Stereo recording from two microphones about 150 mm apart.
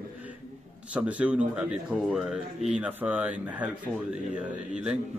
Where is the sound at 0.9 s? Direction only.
10° right (ahead or behind).